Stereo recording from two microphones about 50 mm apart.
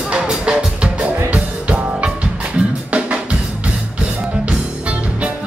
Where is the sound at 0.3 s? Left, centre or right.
Centre.